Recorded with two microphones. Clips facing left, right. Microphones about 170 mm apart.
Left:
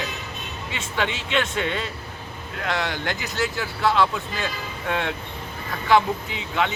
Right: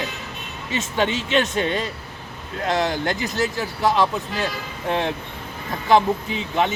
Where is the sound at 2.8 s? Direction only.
45° right (ahead or behind).